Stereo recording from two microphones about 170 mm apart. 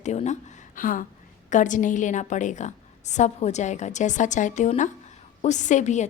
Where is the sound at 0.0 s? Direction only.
45° left (ahead or behind).